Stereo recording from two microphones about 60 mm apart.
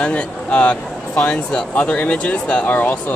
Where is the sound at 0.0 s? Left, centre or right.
Centre.